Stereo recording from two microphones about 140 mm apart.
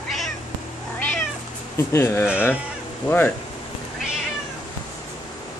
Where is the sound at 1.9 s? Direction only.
20° left (ahead or behind).